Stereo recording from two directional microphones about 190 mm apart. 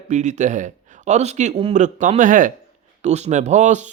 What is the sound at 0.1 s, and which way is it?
Speech, 40° right (ahead or behind).